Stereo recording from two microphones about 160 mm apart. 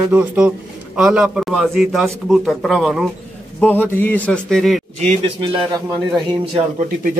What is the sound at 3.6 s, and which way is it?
A man's voice, 10° left (ahead or behind).